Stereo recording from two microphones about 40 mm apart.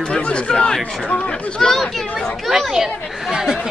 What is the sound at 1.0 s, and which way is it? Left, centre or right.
Speech, left.